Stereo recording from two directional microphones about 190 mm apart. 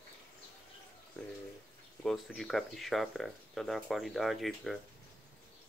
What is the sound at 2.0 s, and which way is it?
Speech, centre (ahead or behind).